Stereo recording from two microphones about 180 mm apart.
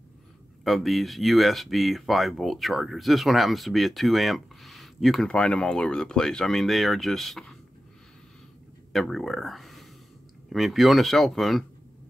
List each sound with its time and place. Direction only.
0.7 s speech: centre (ahead or behind)
8.9 s speech: centre (ahead or behind)